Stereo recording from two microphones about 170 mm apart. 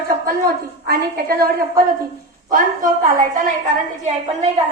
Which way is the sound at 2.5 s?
55° right (ahead or behind).